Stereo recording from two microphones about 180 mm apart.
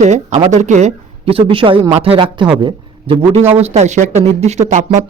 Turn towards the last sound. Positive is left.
turn(degrees=-40)  # may be behind; listen again after turning